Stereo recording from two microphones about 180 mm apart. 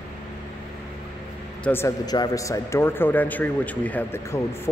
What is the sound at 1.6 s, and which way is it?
Speech, 10° left (ahead or behind).